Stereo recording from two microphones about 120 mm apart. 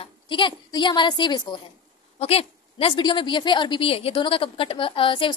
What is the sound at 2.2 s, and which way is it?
Speech, 55° left (ahead or behind).